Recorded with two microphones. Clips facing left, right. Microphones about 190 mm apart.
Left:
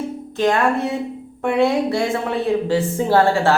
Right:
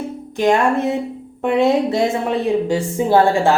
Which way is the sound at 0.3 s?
15° right (ahead or behind).